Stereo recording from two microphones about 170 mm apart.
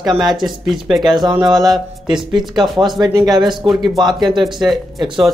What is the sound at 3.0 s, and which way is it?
Speech, 20° right (ahead or behind).